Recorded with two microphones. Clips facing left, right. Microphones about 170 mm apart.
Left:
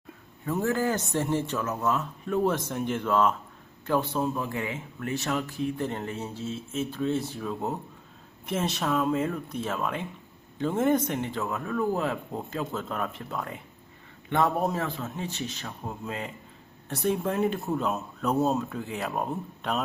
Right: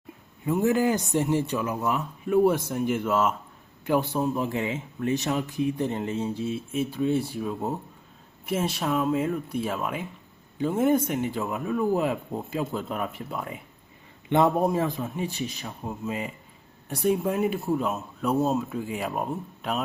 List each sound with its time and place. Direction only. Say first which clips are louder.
0.4 s speech: right 4 dB; 15° right (ahead or behind)
14.3 s speech: right 4 dB; 20° right (ahead or behind)